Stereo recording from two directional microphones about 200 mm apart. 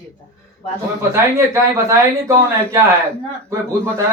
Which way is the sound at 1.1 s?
15° right (ahead or behind).